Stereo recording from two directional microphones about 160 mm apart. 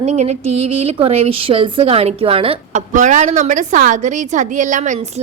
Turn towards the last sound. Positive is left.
turn(degrees=-50)  # may be behind; listen again after turning